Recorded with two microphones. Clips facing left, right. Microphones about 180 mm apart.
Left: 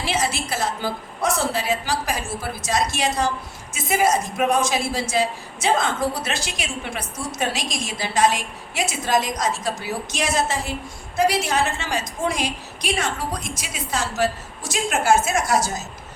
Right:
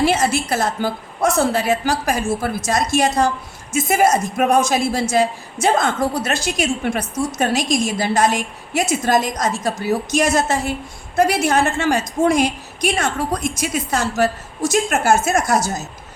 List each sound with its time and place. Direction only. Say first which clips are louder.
0.0 s speech: right 7 dB; 50° right (ahead or behind)